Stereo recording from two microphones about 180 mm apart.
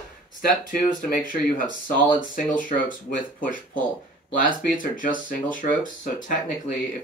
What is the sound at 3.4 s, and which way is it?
Speech, 50° left (ahead or behind).